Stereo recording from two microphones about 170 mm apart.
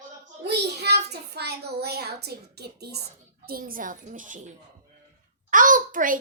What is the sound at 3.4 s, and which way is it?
A child's voice, 60° right (ahead or behind).